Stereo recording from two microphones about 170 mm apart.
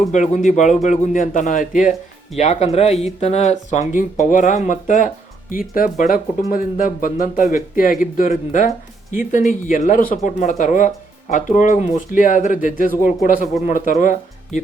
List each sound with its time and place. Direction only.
0.1 s speech: 45° left (ahead or behind)